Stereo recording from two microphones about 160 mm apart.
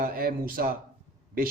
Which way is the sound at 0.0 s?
60° right (ahead or behind).